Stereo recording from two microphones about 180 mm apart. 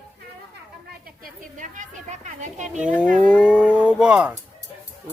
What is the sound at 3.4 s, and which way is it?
Speech, 5° right (ahead or behind).